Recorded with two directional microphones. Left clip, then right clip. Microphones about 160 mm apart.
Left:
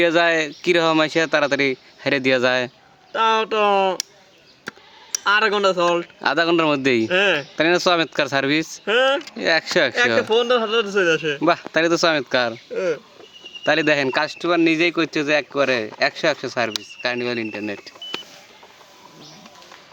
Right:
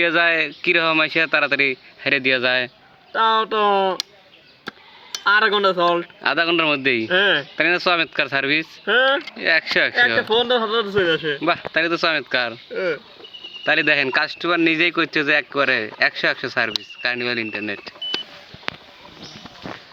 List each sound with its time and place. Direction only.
0.0 s speech: 25° left (ahead or behind); by 2.7 s 65° left (ahead or behind)
3.1 s speech: 20° left (ahead or behind)
5.2 s speech: 20° left (ahead or behind)
6.2 s a man's voice: 55° left (ahead or behind)
7.1 s speech: 20° left (ahead or behind)
7.6 s a man's voice: 40° left (ahead or behind)
12.7 s speech: 25° left (ahead or behind)
13.7 s a man's voice: 45° left (ahead or behind)
14.1 s speech: 25° left (ahead or behind)